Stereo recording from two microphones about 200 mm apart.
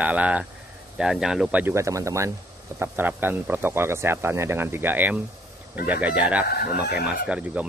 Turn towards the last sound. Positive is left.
turn(degrees=-5)  # may be behind; listen again after turning